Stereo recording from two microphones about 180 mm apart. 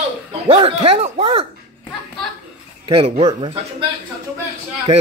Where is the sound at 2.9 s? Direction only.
30° right (ahead or behind).